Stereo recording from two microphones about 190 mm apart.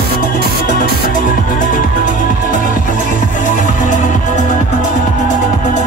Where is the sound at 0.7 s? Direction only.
45° left (ahead or behind).